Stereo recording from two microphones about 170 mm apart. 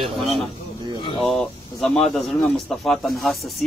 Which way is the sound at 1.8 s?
Centre (ahead or behind).